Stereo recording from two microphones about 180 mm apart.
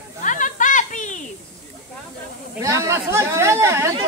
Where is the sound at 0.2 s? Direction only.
45° left (ahead or behind).